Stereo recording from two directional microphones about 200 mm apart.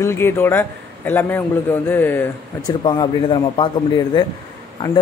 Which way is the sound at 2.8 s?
20° left (ahead or behind).